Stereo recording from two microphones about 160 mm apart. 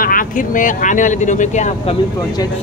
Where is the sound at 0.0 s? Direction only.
60° left (ahead or behind).